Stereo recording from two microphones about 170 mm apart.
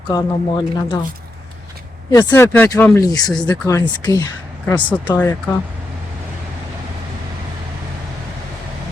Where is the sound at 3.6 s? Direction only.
20° left (ahead or behind).